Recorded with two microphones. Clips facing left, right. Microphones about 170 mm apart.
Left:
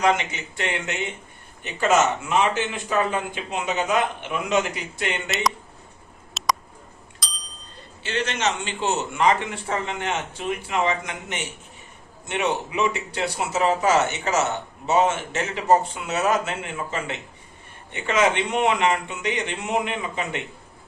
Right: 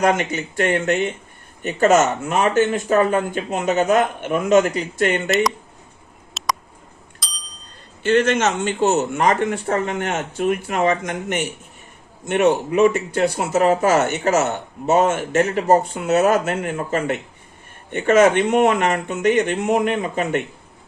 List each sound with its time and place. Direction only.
0.0 s speech: 45° right (ahead or behind)
5.3 s speech: centre (ahead or behind)
6.4 s a sound: centre (ahead or behind)
7.2 s bicycle bell: centre (ahead or behind)
8.0 s speech: 50° right (ahead or behind)